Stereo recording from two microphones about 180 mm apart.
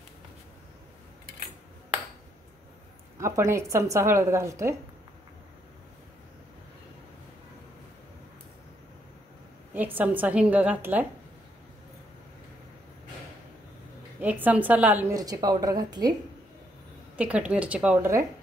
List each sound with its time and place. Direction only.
3.2 s a woman's voice: 15° right (ahead or behind)
9.8 s a woman's voice: 10° right (ahead or behind)
14.2 s a woman's voice: 10° right (ahead or behind)
17.2 s a woman's voice: 5° right (ahead or behind)